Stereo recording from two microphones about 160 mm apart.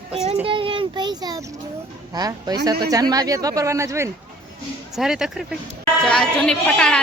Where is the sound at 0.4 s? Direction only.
35° right (ahead or behind); by 4.1 s 15° right (ahead or behind).